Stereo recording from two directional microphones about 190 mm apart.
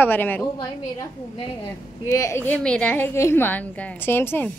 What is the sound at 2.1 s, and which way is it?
A woman's voice, 15° left (ahead or behind).